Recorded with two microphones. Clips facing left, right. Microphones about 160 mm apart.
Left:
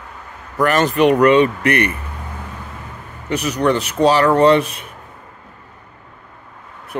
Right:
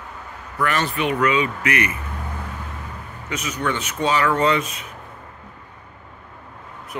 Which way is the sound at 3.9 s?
35° left (ahead or behind).